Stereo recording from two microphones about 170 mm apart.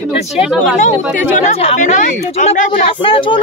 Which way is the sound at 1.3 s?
40° left (ahead or behind).